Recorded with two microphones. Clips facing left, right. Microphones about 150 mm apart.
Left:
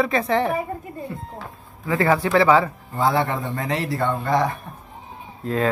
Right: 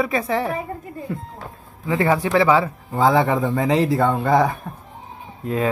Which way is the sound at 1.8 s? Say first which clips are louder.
Even; 15° right (ahead or behind).